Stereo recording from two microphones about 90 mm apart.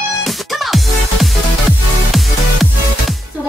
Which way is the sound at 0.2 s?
Centre (ahead or behind).